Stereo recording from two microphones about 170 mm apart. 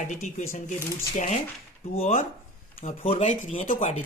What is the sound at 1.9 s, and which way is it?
Speech, 40° left (ahead or behind).